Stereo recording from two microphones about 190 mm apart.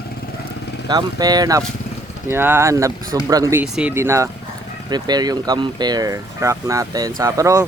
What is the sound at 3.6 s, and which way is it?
Speech, 5° right (ahead or behind).